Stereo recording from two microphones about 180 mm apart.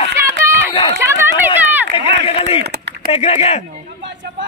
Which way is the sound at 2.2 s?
35° left (ahead or behind).